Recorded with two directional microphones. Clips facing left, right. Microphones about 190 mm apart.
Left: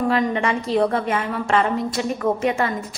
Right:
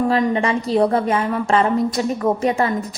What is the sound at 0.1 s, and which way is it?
A woman's voice, 35° right (ahead or behind).